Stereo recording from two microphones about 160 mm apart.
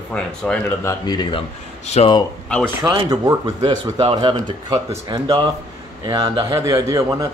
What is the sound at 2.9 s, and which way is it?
Speech, 25° right (ahead or behind).